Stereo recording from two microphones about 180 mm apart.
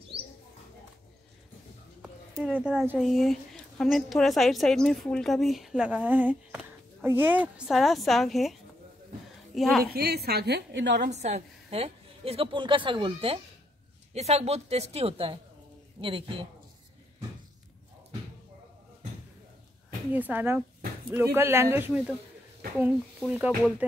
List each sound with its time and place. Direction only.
2.0 s a woman's voice: 10° right (ahead or behind)
9.9 s a woman's voice: 60° right (ahead or behind)
11.0 s a woman's voice: 40° right (ahead or behind)
20.1 s speech: 10° right (ahead or behind)